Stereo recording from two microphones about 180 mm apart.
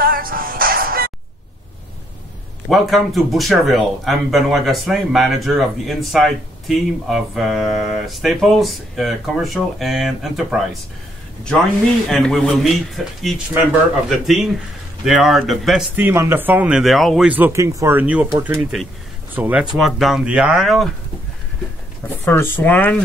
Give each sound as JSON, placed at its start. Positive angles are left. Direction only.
{"t": 0.0, "sound": "music", "side_deg": -55}
{"t": 2.7, "sound": "speech", "side_deg": 0}
{"t": 12.1, "sound": "speech", "side_deg": 0}
{"t": 16.1, "sound": "speech", "side_deg": -15}
{"t": 22.0, "sound": "speech", "side_deg": 10}